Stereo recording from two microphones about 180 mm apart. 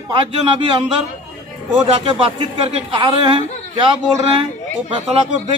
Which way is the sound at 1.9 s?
30° right (ahead or behind).